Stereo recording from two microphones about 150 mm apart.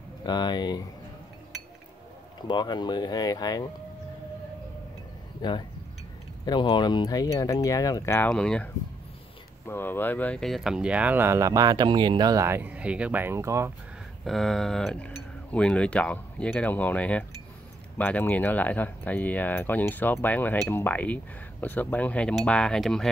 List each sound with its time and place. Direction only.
0.2 s speech: 30° left (ahead or behind)
2.4 s speech: 30° left (ahead or behind)
5.4 s speech: 30° left (ahead or behind); by 8.6 s 5° left (ahead or behind)
9.7 s speech: 15° left (ahead or behind); by 13.7 s 20° right (ahead or behind)
14.2 s speech: centre (ahead or behind)